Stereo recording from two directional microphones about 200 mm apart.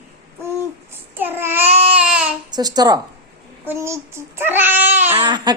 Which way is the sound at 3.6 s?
15° right (ahead or behind).